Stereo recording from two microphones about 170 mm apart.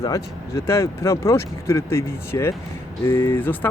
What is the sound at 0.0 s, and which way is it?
A man's voice, 20° left (ahead or behind).